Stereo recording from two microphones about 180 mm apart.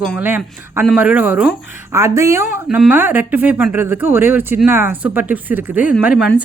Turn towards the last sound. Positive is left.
turn(degrees=-5)  # may be behind; listen again after turning